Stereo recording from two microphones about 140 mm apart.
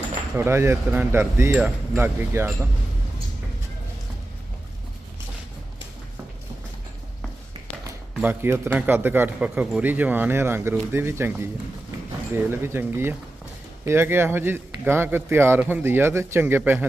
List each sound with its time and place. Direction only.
0.3 s speech: 15° right (ahead or behind)
8.2 s speech: 15° right (ahead or behind)